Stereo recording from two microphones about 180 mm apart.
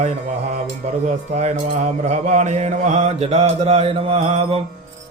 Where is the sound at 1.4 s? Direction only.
40° right (ahead or behind).